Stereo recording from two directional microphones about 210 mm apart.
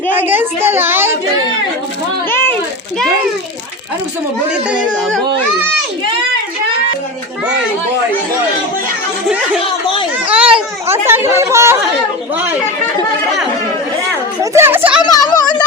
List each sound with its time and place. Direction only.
0.2 s a woman's voice: 10° right (ahead or behind)
2.3 s a sound: 10° left (ahead or behind)
9.6 s a child's voice: 25° left (ahead or behind)
10.2 s a child's voice: 5° right (ahead or behind)
14.5 s a woman's voice: 10° right (ahead or behind)
15.0 s speech: 20° left (ahead or behind)